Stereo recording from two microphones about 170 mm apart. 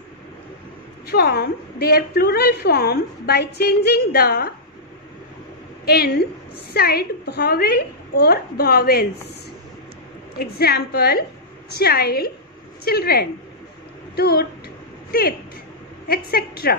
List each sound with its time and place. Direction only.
1.0 s a woman's voice: 65° left (ahead or behind)
5.9 s a woman's voice: 65° left (ahead or behind)
10.4 s a woman's voice: 65° left (ahead or behind)